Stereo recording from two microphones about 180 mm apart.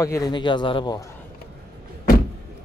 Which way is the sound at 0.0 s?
20° left (ahead or behind).